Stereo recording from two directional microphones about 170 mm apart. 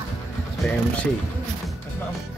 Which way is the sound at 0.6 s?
5° left (ahead or behind).